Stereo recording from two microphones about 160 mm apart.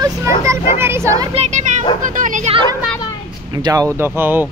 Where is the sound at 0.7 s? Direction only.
15° right (ahead or behind).